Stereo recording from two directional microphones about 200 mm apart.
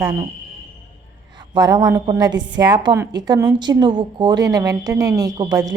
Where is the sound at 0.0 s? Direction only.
15° right (ahead or behind).